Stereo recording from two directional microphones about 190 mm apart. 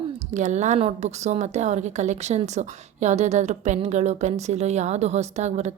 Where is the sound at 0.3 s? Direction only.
40° right (ahead or behind).